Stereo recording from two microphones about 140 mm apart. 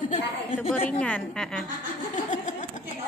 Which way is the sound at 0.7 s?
10° left (ahead or behind).